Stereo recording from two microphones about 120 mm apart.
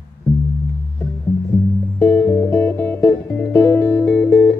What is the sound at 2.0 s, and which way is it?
Music, 15° left (ahead or behind).